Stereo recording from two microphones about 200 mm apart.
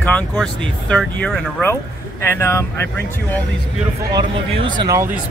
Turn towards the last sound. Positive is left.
turn(degrees=-20)  # may be behind; listen again after turning